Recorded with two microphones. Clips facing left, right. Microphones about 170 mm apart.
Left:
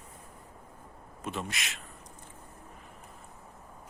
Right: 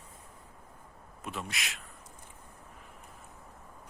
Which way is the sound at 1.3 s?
Centre (ahead or behind).